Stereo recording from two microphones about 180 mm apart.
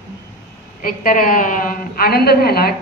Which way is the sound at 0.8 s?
50° left (ahead or behind).